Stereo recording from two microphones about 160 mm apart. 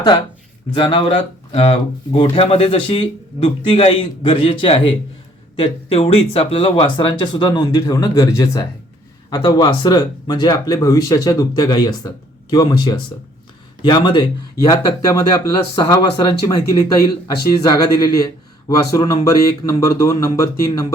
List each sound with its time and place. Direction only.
0.7 s speech: 35° left (ahead or behind)